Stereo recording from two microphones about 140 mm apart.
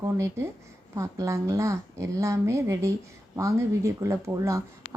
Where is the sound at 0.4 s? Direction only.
20° right (ahead or behind).